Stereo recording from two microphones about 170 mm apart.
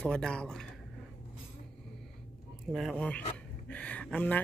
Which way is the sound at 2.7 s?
Centre (ahead or behind).